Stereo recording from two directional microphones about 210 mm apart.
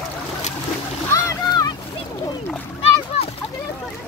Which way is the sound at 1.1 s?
15° left (ahead or behind).